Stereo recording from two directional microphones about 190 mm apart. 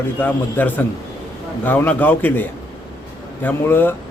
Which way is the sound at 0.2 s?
10° left (ahead or behind).